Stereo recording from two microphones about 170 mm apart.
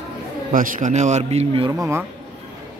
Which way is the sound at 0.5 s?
50° right (ahead or behind).